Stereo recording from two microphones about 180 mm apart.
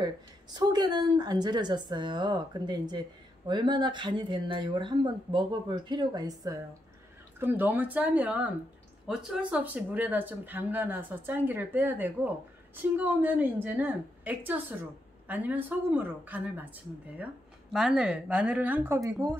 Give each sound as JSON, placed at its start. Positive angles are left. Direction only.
{"t": 0.0, "sound": "speech", "side_deg": -25}
{"t": 17.7, "sound": "speech", "side_deg": -5}